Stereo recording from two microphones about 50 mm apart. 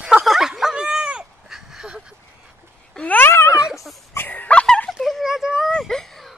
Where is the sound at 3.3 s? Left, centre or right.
Left.